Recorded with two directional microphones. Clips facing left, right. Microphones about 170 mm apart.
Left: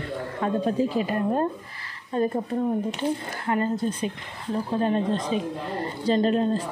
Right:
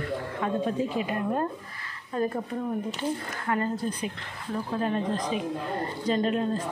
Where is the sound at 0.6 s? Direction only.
35° left (ahead or behind).